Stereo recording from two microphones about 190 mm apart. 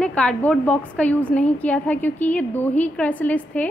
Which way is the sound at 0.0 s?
5° left (ahead or behind).